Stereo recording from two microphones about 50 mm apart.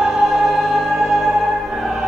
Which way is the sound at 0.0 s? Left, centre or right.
Centre.